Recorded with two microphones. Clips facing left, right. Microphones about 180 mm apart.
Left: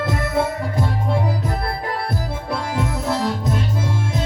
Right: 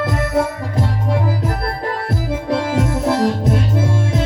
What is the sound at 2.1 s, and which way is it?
Music, 90° right.